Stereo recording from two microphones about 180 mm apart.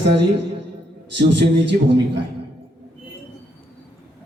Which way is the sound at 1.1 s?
75° right (ahead or behind).